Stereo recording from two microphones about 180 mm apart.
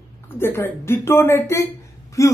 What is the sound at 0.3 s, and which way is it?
Speech, 10° left (ahead or behind).